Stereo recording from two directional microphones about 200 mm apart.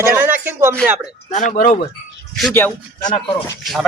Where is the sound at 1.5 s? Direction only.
40° left (ahead or behind).